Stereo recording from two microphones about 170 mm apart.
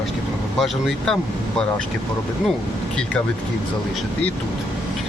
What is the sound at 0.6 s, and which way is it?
Speech, centre (ahead or behind).